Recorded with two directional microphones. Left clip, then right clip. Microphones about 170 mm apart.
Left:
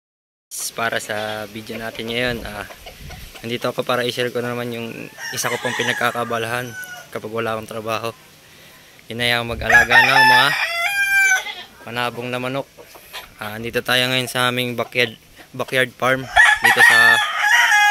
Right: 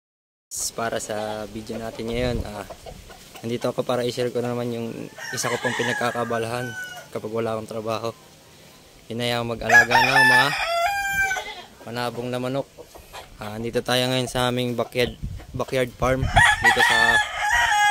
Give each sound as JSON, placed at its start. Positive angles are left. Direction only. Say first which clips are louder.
{"t": 0.5, "sound": "speech", "louder": "left 4 dB", "side_deg": -10}
{"t": 1.2, "sound": "speech", "louder": "left 3 dB", "side_deg": 5}
{"t": 2.0, "sound": "speech", "louder": "left 4 dB", "side_deg": -5}
{"t": 10.5, "sound": "crowing", "louder": "left 2 dB", "side_deg": -65}
{"t": 11.8, "sound": "speech", "louder": "left 4 dB", "side_deg": 0}
{"t": 16.3, "sound": "crowing", "louder": "left 4 dB", "side_deg": 30}